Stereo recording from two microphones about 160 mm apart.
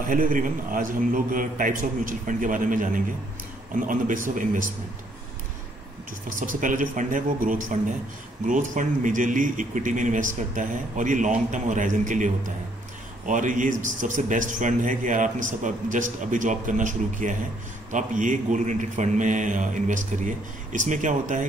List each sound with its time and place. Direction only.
0.1 s a man's voice: 55° right (ahead or behind)
6.2 s a man's voice: 55° right (ahead or behind)
13.3 s speech: 55° right (ahead or behind)